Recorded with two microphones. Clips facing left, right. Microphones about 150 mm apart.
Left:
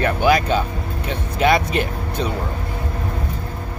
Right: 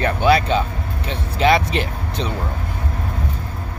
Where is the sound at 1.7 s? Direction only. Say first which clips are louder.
Left 1 dB; 50° left (ahead or behind).